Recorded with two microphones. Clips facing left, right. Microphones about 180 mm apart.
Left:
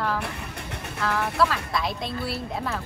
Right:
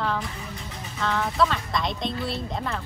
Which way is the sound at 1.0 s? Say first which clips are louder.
Even; 5° left (ahead or behind).